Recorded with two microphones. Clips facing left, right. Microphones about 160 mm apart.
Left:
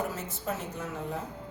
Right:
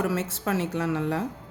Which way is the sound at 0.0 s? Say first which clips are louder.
Right 7 dB; 85° right.